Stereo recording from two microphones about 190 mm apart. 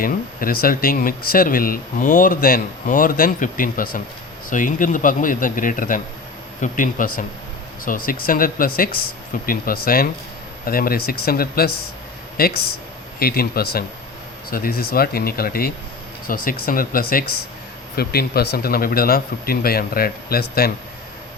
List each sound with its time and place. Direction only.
0.0 s speech: 50° left (ahead or behind)